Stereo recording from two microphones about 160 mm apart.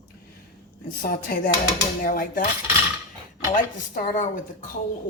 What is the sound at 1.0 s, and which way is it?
A woman's voice, 65° left (ahead or behind).